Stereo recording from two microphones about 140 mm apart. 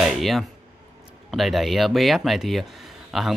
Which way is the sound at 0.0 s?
Centre (ahead or behind).